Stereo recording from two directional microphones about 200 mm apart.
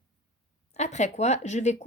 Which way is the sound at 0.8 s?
35° left (ahead or behind).